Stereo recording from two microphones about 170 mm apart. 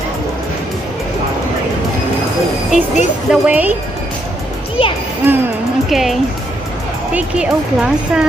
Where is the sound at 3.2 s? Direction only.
10° right (ahead or behind).